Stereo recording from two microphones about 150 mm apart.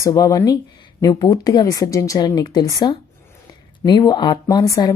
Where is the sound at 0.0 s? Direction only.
25° left (ahead or behind).